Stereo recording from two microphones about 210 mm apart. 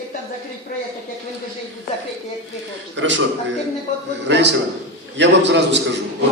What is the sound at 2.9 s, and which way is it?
Speech, 60° right (ahead or behind).